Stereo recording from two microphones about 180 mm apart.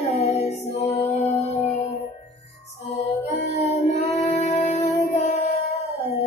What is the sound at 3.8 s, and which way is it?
Child singing, 35° left (ahead or behind).